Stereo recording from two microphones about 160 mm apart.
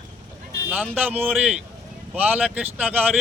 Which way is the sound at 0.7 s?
10° right (ahead or behind).